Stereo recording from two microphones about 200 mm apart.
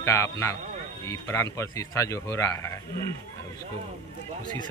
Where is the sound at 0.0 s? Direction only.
15° left (ahead or behind).